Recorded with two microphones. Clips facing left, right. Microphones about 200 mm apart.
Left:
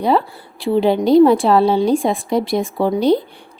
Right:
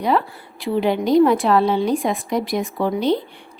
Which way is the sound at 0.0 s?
30° left (ahead or behind).